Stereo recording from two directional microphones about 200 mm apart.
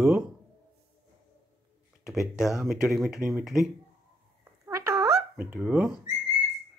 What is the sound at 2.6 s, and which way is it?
Speech, 5° right (ahead or behind).